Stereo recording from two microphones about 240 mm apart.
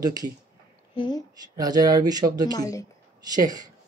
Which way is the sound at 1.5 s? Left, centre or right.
Centre.